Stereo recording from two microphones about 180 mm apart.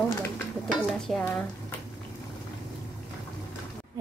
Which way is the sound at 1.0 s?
5° left (ahead or behind).